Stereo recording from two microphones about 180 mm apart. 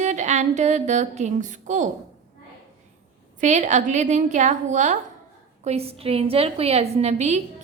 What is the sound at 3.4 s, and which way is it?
A woman's voice, 40° right (ahead or behind).